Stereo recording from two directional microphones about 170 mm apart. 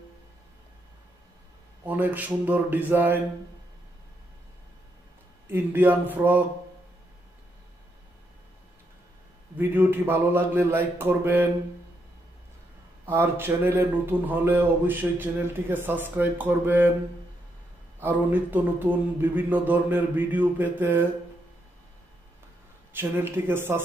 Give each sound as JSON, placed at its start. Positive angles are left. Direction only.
{"t": 1.9, "sound": "speech", "side_deg": -10}
{"t": 5.5, "sound": "speech", "side_deg": -10}
{"t": 9.6, "sound": "speech", "side_deg": -10}
{"t": 13.0, "sound": "speech", "side_deg": -15}
{"t": 18.0, "sound": "speech", "side_deg": -10}
{"t": 22.9, "sound": "speech", "side_deg": -15}